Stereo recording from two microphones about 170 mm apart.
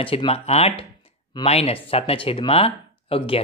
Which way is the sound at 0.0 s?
35° left (ahead or behind).